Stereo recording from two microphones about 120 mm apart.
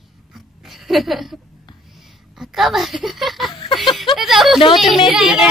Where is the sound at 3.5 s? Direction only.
45° left (ahead or behind).